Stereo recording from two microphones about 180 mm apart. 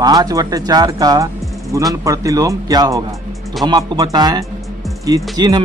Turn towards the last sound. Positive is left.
turn(degrees=-20)  # may be behind; listen again after turning